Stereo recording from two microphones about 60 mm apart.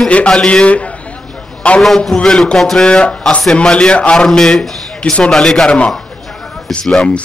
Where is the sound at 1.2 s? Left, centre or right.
Centre.